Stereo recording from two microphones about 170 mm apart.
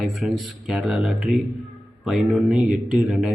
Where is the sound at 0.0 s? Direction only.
Centre (ahead or behind).